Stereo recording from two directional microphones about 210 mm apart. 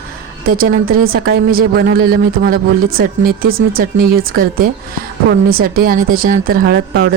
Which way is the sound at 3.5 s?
75° right (ahead or behind).